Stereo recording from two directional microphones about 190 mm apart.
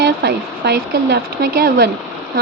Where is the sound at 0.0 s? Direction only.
60° right (ahead or behind).